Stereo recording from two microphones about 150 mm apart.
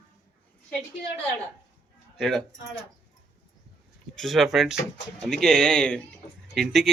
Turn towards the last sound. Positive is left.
turn(degrees=0)  # may be behind; listen again after turning